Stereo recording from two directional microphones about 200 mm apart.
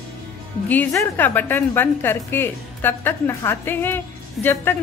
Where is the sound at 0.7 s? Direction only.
10° left (ahead or behind).